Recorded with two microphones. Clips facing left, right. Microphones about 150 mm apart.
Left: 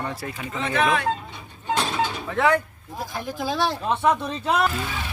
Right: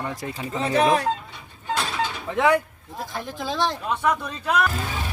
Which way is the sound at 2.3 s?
15° right (ahead or behind).